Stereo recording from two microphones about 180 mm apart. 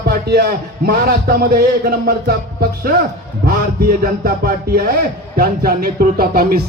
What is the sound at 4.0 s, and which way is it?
Speech, 55° right (ahead or behind).